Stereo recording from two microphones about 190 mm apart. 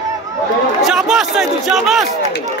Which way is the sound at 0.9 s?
Centre (ahead or behind).